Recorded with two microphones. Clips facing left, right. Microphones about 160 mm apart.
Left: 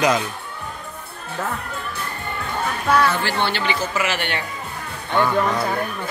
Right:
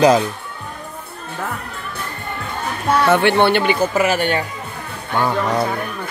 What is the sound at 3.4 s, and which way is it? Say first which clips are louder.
A child's voice: right 8 dB; 55° right (ahead or behind).